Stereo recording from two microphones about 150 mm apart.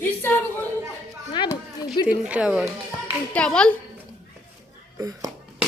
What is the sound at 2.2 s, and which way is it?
Speech, 5° right (ahead or behind).